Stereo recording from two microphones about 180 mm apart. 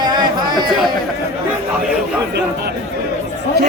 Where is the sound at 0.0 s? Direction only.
25° right (ahead or behind).